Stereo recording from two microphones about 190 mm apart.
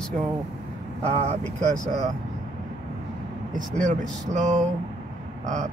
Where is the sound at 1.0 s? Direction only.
35° right (ahead or behind).